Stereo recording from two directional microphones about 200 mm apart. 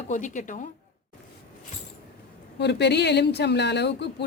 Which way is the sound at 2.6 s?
55° left (ahead or behind).